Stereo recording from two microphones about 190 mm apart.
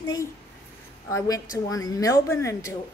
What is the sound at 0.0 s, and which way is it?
Speech, 20° left (ahead or behind).